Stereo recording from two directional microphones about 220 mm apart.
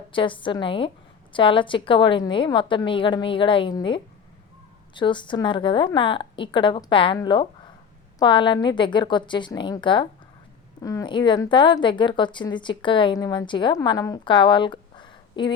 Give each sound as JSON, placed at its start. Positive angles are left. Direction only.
{"t": 0.1, "sound": "a woman's voice", "side_deg": 20}